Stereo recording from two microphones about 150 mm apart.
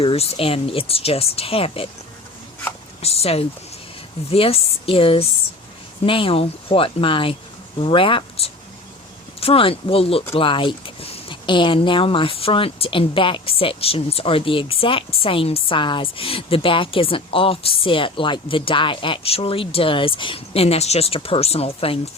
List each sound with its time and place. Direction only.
0.0 s speech: 40° left (ahead or behind)
3.0 s speech: 40° left (ahead or behind)